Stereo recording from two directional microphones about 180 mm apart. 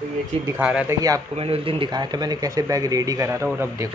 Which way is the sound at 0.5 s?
5° right (ahead or behind).